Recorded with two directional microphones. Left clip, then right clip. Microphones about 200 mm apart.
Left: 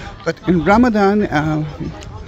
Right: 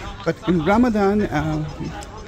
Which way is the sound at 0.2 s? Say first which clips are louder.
Left 4 dB; 20° left (ahead or behind).